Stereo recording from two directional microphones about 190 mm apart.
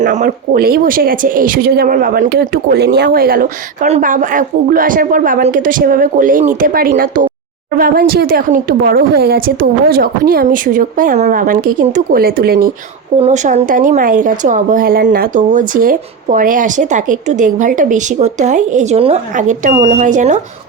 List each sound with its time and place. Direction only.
0.0 s a woman's voice: 40° right (ahead or behind)
13.1 s a woman's voice: 35° right (ahead or behind)